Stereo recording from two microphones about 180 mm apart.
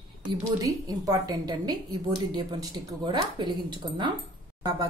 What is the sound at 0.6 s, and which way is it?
A woman's voice, 20° right (ahead or behind).